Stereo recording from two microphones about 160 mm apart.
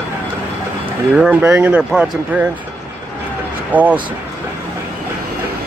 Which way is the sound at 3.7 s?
10° right (ahead or behind).